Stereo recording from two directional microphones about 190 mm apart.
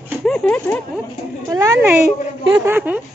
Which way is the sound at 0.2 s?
5° left (ahead or behind).